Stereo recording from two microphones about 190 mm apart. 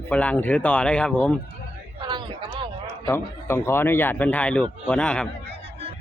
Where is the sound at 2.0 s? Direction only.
25° right (ahead or behind).